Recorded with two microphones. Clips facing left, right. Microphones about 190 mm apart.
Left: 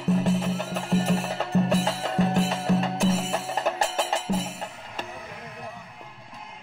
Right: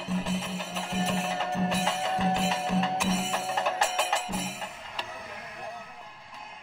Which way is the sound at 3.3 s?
40° left (ahead or behind).